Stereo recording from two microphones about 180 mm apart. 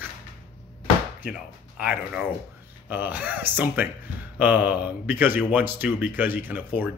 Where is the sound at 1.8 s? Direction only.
5° right (ahead or behind).